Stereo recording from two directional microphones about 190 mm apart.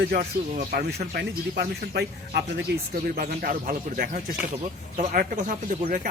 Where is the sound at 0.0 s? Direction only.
50° right (ahead or behind).